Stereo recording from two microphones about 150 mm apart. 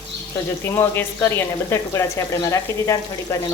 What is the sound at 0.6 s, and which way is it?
Speech, 15° left (ahead or behind).